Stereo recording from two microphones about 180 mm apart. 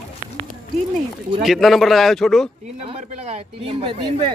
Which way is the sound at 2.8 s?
35° right (ahead or behind).